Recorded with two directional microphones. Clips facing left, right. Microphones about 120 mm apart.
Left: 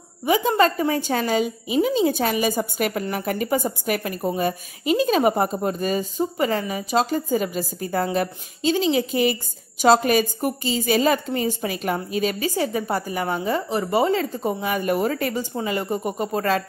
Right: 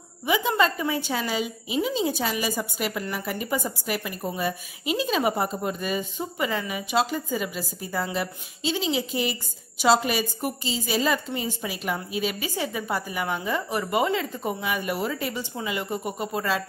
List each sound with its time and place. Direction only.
0.2 s a woman's voice: 40° left (ahead or behind)
4.2 s a woman's voice: 40° left (ahead or behind)